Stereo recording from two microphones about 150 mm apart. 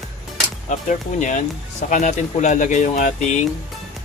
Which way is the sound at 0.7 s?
55° left (ahead or behind).